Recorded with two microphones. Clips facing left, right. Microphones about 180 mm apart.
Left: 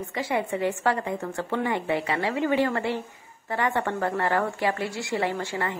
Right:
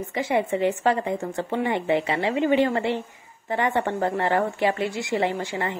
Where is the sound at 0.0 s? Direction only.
20° right (ahead or behind).